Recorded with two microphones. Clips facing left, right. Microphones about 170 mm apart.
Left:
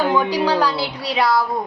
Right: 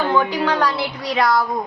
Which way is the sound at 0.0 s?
10° left (ahead or behind).